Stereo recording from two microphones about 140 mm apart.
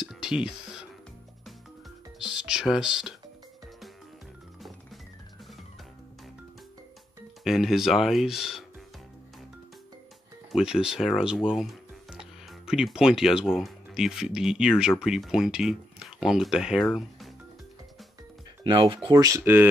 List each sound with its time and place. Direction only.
0.0 s a sound: 5° right (ahead or behind)
2.1 s music: 5° right (ahead or behind)
2.6 s speech: 5° right (ahead or behind)
7.4 s speech: centre (ahead or behind)
10.5 s speech: 5° right (ahead or behind)
16.8 s speech: 10° left (ahead or behind)
18.6 s speech: 35° right (ahead or behind); by 19.7 s 15° right (ahead or behind)